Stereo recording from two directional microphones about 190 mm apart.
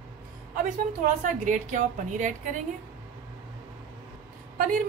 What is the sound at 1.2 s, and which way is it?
A woman's voice, 40° right (ahead or behind).